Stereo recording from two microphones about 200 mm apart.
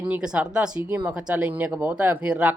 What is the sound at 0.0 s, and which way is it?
Speech, 5° right (ahead or behind).